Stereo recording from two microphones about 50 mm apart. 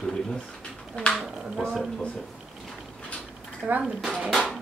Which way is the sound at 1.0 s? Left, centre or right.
Left.